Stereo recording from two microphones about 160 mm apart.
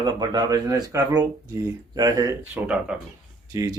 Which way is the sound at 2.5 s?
5° right (ahead or behind).